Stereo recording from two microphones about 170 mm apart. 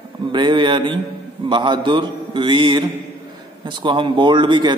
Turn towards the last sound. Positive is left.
turn(degrees=-25)  # may be behind; listen again after turning